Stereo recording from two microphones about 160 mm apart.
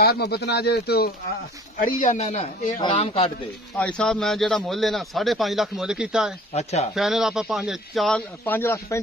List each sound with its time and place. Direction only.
0.0 s speech: 85° left
1.8 s speech: 55° left (ahead or behind); by 3.3 s 35° left (ahead or behind)
3.7 s a man's voice: 5° left (ahead or behind)
6.5 s speech: 40° left (ahead or behind)
7.0 s a man's voice: centre (ahead or behind)
8.5 s a man's voice: 15° left (ahead or behind)